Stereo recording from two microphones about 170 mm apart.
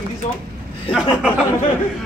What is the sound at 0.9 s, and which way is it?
Speech, 5° right (ahead or behind).